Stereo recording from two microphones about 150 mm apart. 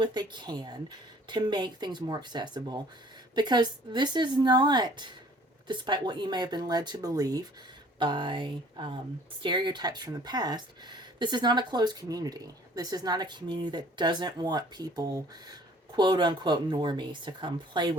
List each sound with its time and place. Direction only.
0.0 s speech: 30° right (ahead or behind)